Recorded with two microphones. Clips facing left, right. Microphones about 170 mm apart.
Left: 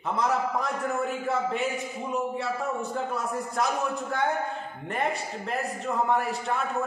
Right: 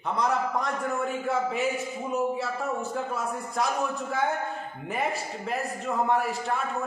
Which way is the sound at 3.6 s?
Centre (ahead or behind).